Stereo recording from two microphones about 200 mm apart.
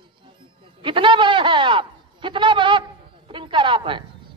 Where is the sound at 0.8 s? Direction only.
25° right (ahead or behind).